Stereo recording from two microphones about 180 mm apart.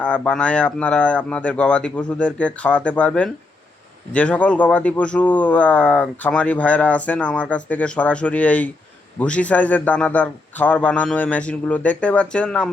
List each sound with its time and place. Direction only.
0.0 s speech: 5° left (ahead or behind)